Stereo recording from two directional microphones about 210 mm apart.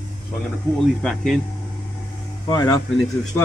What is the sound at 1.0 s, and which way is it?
Speech, centre (ahead or behind).